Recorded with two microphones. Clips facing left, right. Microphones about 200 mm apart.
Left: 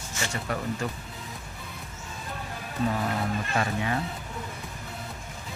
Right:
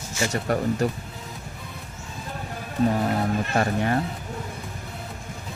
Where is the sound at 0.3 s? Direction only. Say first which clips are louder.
Right 7 dB; 40° right (ahead or behind).